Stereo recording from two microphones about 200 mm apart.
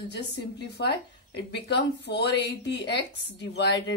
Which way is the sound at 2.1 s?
55° left (ahead or behind).